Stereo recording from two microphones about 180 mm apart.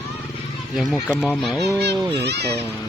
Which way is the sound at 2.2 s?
65° right (ahead or behind).